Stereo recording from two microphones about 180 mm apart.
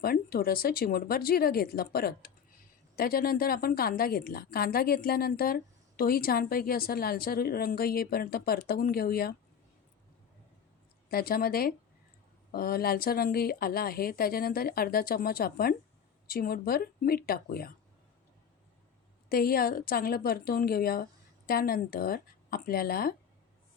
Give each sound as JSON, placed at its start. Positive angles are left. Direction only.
{"t": 0.0, "sound": "a woman's voice", "side_deg": 55}
{"t": 11.1, "sound": "a woman's voice", "side_deg": 55}
{"t": 19.3, "sound": "a woman's voice", "side_deg": 55}